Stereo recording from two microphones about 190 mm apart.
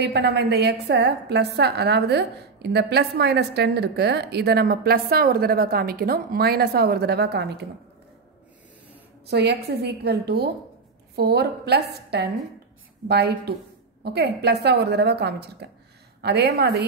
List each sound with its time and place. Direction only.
0.0 s a woman's voice: 60° right (ahead or behind)
9.3 s a woman's voice: 60° right (ahead or behind)